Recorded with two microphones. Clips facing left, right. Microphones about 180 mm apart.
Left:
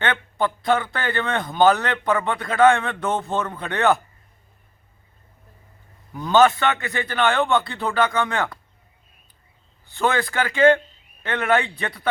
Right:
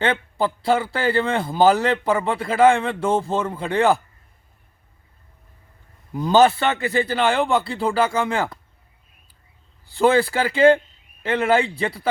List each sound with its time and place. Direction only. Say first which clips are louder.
0.0 s speech: right 2 dB; 30° right (ahead or behind)
3.3 s speech: right 4 dB; 10° right (ahead or behind)
6.1 s a man's voice: right 1 dB; 35° right (ahead or behind)
9.9 s a man's voice: right 5 dB; 30° right (ahead or behind)